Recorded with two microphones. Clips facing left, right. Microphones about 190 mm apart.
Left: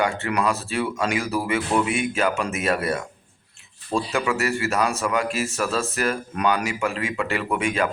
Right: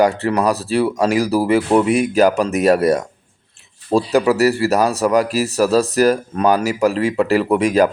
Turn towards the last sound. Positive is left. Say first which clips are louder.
# right 9 dB
turn(degrees=-40)  # may be behind; listen again after turning